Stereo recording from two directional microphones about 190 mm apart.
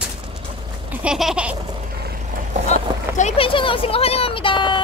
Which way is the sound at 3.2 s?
35° left (ahead or behind).